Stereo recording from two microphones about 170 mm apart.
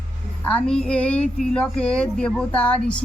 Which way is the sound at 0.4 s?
5° left (ahead or behind).